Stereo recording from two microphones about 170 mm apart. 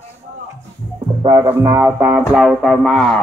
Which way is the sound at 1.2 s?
25° right (ahead or behind).